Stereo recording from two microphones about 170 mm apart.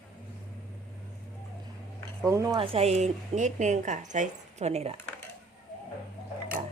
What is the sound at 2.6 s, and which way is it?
Speech, 35° right (ahead or behind).